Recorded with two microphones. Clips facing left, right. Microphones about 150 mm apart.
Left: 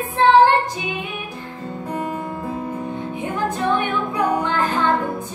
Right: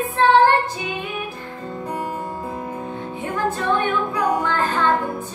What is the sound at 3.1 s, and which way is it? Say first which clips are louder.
Music: right 1 dB; 15° left (ahead or behind).